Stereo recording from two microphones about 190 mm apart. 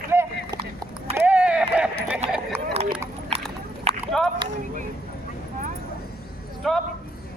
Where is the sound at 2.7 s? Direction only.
35° right (ahead or behind).